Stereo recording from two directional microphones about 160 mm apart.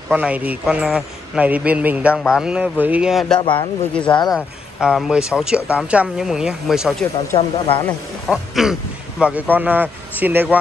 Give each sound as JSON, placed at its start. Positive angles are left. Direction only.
{"t": 0.1, "sound": "a man's voice", "side_deg": -10}
{"t": 3.3, "sound": "speech", "side_deg": 30}
{"t": 4.7, "sound": "speech", "side_deg": -5}
{"t": 7.3, "sound": "speech", "side_deg": 35}
{"t": 8.3, "sound": "a man's voice", "side_deg": 0}